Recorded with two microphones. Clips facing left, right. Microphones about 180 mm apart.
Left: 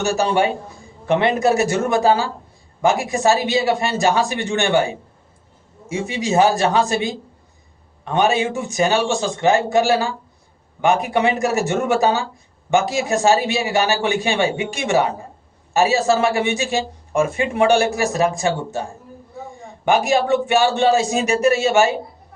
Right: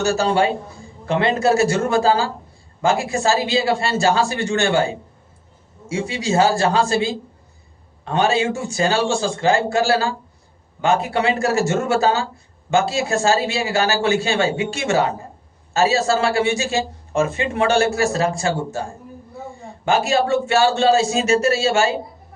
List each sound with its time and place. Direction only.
0.0 s a man's voice: 15° left (ahead or behind)
5.9 s a man's voice: 20° left (ahead or behind)
19.8 s a man's voice: 15° left (ahead or behind)